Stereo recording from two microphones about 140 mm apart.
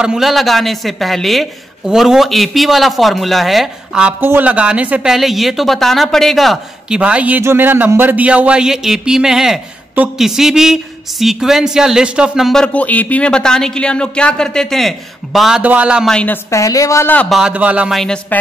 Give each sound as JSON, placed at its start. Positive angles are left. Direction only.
{"t": 0.0, "sound": "speech", "side_deg": -5}
{"t": 16.1, "sound": "a woman's voice", "side_deg": 10}
{"t": 16.4, "sound": "speech", "side_deg": 25}
{"t": 17.3, "sound": "speech", "side_deg": -5}